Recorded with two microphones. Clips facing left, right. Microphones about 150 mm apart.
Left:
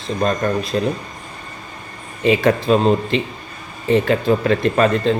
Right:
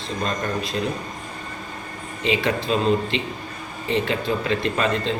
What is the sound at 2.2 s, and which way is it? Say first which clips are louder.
Speech: left 7 dB; 50° left (ahead or behind).